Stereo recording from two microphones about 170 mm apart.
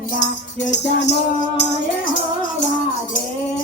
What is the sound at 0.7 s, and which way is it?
Music, 85° left.